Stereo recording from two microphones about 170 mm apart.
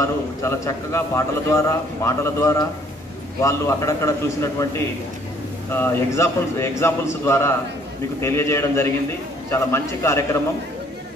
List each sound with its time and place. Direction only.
0.0 s a man's voice: 15° left (ahead or behind)